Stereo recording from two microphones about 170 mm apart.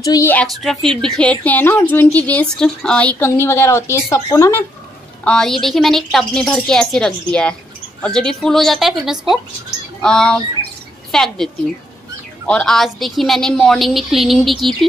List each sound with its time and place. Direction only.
0.0 s a woman's voice: 20° left (ahead or behind)
0.3 s a woman's voice: 5° left (ahead or behind)
5.2 s a woman's voice: 5° left (ahead or behind)